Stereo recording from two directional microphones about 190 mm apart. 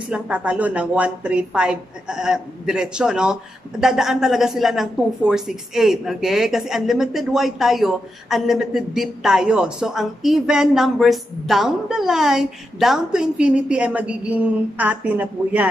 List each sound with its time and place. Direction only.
0.1 s a woman's voice: 5° right (ahead or behind)